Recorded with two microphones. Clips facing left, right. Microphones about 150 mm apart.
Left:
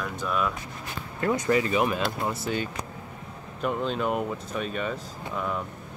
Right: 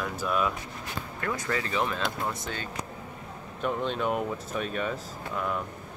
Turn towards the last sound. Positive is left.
turn(degrees=0)  # may be behind; listen again after turning